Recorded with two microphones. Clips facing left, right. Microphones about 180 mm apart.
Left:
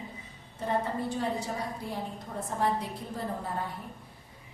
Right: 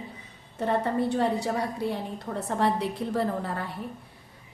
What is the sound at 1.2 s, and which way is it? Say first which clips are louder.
A woman's voice: right 6 dB; 70° right (ahead or behind).